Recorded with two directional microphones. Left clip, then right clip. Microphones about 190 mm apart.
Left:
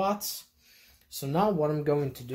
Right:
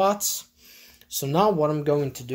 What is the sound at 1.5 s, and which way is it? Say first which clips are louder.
Speech: right 5 dB; 20° right (ahead or behind).